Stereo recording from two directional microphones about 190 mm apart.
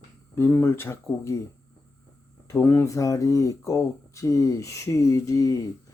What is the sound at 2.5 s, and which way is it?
Speech, 15° left (ahead or behind).